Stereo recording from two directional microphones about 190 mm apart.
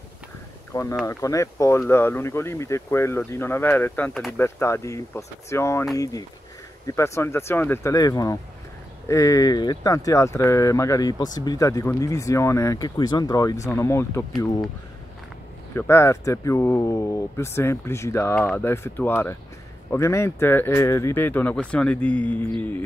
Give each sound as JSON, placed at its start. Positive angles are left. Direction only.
{"t": 1.0, "sound": "speech", "side_deg": 15}
{"t": 7.0, "sound": "speech", "side_deg": 15}
{"t": 15.7, "sound": "speech", "side_deg": 15}